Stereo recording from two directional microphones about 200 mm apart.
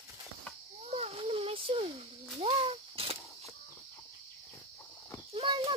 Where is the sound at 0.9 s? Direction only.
30° right (ahead or behind).